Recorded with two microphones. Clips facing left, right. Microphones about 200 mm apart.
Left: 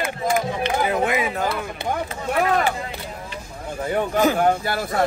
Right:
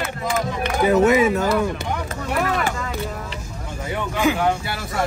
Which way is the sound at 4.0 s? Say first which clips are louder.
Left 2 dB; 40° left (ahead or behind).